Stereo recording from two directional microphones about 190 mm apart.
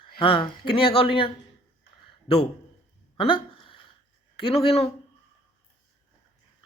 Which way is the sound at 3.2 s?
30° left (ahead or behind).